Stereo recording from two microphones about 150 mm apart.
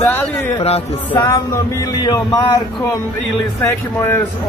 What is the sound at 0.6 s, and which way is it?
Speech, 45° left (ahead or behind).